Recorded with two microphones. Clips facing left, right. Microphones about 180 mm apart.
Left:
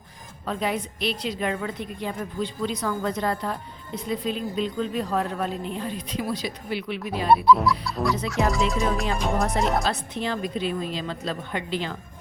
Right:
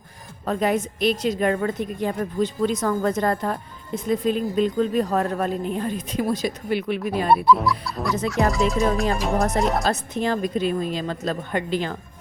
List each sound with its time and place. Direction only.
0.4 s a woman's voice: 45° right (ahead or behind)
7.3 s speech: centre (ahead or behind)
9.8 s a woman's voice: 45° right (ahead or behind)